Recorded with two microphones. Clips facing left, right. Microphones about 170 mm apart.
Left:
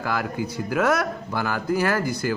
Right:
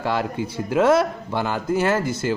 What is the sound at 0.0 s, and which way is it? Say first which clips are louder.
Speech: right 3 dB; 25° right (ahead or behind).